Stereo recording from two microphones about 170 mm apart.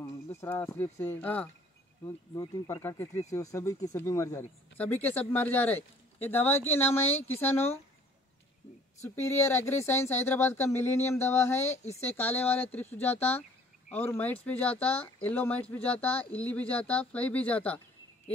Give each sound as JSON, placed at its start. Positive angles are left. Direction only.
{"t": 0.0, "sound": "speech", "side_deg": 15}
{"t": 2.0, "sound": "speech", "side_deg": 20}
{"t": 9.0, "sound": "speech", "side_deg": 15}